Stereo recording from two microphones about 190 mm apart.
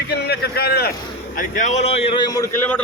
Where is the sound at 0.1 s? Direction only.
60° left (ahead or behind).